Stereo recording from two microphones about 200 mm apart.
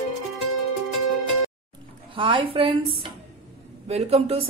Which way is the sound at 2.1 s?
25° right (ahead or behind).